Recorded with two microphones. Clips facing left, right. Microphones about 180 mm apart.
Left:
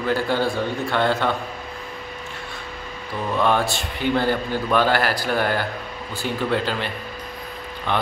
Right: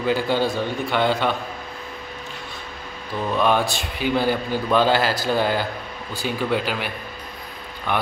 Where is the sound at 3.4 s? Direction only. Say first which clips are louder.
Even; 15° right (ahead or behind).